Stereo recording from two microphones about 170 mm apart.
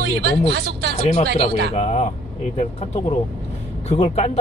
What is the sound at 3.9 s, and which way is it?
Speech, 40° left (ahead or behind).